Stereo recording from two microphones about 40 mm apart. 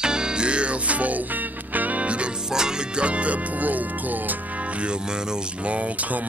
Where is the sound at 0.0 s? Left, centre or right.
Right.